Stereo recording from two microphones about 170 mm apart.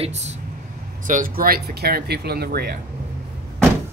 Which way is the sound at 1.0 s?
50° right (ahead or behind).